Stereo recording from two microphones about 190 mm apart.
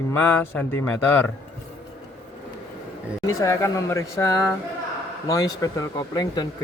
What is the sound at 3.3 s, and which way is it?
Speech, 15° left (ahead or behind).